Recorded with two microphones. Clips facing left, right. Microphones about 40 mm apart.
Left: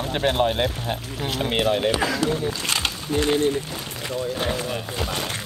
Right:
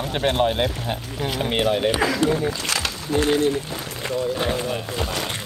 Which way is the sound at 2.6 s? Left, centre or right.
Left.